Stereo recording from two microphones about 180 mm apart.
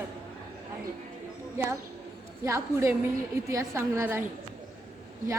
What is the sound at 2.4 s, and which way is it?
A woman's voice, 15° right (ahead or behind).